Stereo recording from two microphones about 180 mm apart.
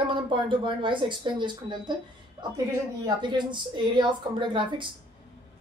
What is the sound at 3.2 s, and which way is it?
A woman's voice, 25° right (ahead or behind).